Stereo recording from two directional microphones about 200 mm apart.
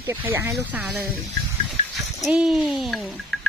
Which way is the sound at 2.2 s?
Centre (ahead or behind).